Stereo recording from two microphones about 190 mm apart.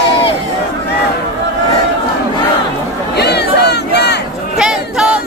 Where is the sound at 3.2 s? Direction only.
60° left (ahead or behind).